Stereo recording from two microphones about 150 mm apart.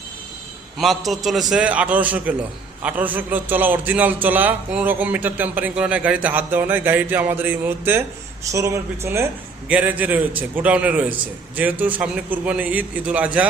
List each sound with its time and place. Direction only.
0.8 s a man's voice: centre (ahead or behind)